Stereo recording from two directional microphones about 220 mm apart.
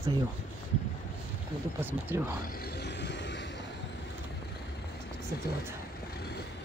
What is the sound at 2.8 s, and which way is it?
Vehicle, 50° left (ahead or behind).